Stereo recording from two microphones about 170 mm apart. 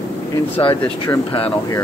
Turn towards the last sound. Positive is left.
turn(degrees=30)  # may be behind; listen again after turning